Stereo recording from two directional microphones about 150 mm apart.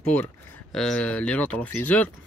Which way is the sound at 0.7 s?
5° left (ahead or behind).